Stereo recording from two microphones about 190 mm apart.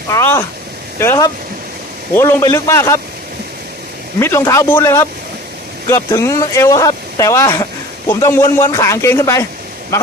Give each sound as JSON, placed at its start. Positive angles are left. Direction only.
{"t": 0.1, "sound": "speech", "side_deg": 15}
{"t": 4.2, "sound": "speech", "side_deg": 15}